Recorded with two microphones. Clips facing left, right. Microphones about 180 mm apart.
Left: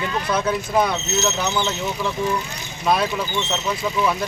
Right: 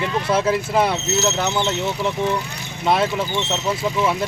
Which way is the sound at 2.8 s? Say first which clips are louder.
Right 1 dB; 25° right (ahead or behind).